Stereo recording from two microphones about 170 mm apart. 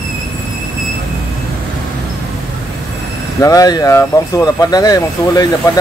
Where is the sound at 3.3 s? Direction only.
20° left (ahead or behind).